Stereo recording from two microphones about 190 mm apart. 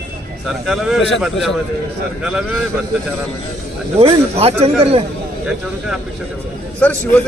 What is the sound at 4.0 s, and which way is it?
A man's voice, 30° right (ahead or behind).